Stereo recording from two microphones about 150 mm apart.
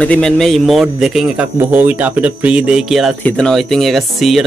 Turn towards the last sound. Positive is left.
turn(degrees=0)  # may be behind; listen again after turning